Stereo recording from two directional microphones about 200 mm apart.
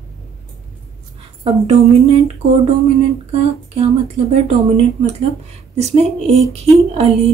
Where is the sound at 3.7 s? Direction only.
30° right (ahead or behind).